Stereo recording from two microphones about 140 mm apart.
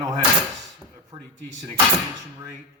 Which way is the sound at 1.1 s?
35° right (ahead or behind).